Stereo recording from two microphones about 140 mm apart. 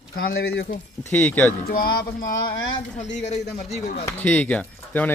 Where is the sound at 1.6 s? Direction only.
90° left.